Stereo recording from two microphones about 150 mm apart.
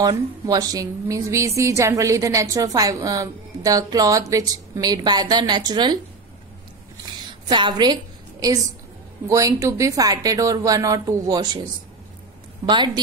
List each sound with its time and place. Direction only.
0.0 s a woman's voice: 25° right (ahead or behind)
7.1 s a sound: 30° right (ahead or behind)
9.3 s a woman's voice: 20° right (ahead or behind)
12.6 s a woman's voice: 30° right (ahead or behind)